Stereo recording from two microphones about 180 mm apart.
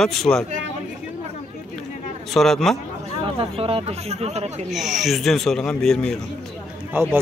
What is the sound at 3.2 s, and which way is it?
Speech, 30° right (ahead or behind).